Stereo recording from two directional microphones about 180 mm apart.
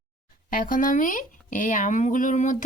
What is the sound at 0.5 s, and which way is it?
Speech, 50° left (ahead or behind).